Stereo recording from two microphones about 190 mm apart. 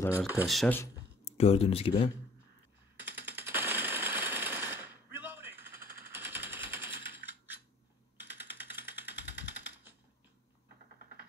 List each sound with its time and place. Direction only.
0.1 s speech: 10° right (ahead or behind)
1.2 s speech: 30° left (ahead or behind)
3.0 s jackhammer: 10° right (ahead or behind)
8.4 s jackhammer: 10° right (ahead or behind)